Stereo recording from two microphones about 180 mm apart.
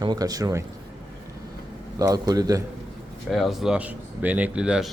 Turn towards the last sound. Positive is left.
turn(degrees=-5)  # may be behind; listen again after turning